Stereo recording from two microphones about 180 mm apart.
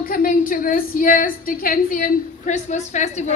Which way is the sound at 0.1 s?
50° left (ahead or behind).